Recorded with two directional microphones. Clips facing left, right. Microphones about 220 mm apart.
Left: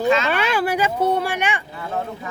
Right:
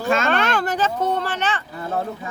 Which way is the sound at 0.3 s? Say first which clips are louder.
Even; 10° left (ahead or behind).